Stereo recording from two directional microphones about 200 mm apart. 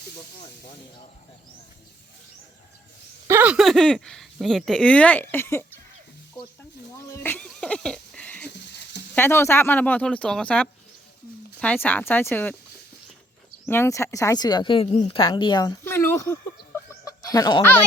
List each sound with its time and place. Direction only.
3.2 s speech: 10° right (ahead or behind); by 5.6 s 10° left (ahead or behind)
6.9 s speech: 10° left (ahead or behind)
13.7 s speech: 10° left (ahead or behind)
17.1 s chicken: 20° left (ahead or behind)